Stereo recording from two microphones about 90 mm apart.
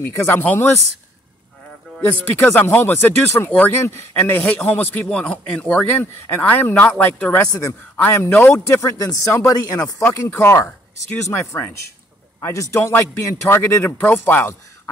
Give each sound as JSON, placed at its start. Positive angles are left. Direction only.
{"t": 0.1, "sound": "speech", "side_deg": 25}
{"t": 2.2, "sound": "speech", "side_deg": 25}
{"t": 5.9, "sound": "speech", "side_deg": 25}
{"t": 7.3, "sound": "speech", "side_deg": 35}
{"t": 8.6, "sound": "speech", "side_deg": 35}
{"t": 10.1, "sound": "speech", "side_deg": 30}